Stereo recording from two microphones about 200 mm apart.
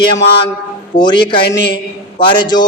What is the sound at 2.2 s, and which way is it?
Speech, 20° left (ahead or behind).